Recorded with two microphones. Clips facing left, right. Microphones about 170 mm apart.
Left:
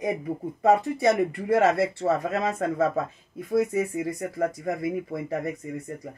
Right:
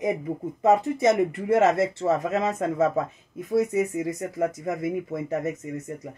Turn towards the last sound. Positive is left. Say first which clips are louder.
# right 2 dB
turn(degrees=-20)  # may be behind; listen again after turning